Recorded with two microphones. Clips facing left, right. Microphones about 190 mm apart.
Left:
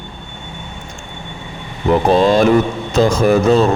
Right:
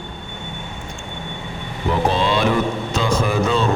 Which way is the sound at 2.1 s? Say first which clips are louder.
Left 7 dB; 45° left (ahead or behind).